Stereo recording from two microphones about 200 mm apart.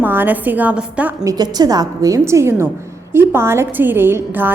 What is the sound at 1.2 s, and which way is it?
A woman's voice, 20° right (ahead or behind).